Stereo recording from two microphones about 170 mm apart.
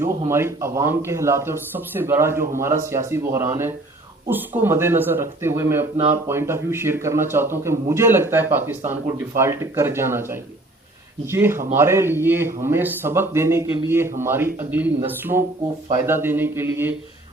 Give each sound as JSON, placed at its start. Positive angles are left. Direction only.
{"t": 0.3, "sound": "speech", "side_deg": -15}